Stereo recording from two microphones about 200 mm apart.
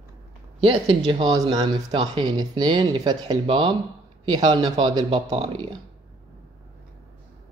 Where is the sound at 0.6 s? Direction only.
25° right (ahead or behind).